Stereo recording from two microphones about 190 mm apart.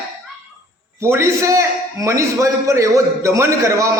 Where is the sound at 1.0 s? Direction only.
15° right (ahead or behind).